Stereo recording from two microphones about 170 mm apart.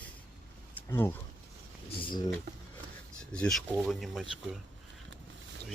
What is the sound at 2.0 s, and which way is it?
Speech, 25° left (ahead or behind).